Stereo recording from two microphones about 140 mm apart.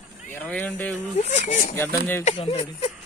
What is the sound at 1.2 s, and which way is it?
Speech, 55° left (ahead or behind).